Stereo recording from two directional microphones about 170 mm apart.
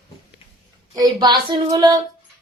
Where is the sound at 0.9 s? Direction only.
25° right (ahead or behind).